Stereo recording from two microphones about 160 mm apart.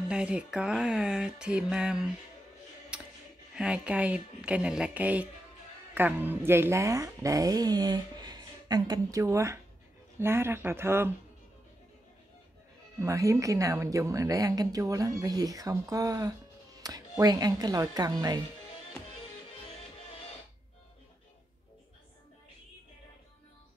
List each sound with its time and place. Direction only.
0.1 s music: 5° right (ahead or behind)
2.9 s a sound: 5° right (ahead or behind)
3.5 s a woman's voice: 5° right (ahead or behind)
13.0 s a woman's voice: 20° right (ahead or behind)